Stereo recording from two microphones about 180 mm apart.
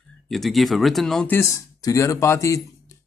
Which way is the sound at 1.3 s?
15° left (ahead or behind).